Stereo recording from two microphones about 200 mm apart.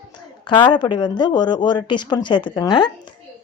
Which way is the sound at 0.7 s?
20° left (ahead or behind).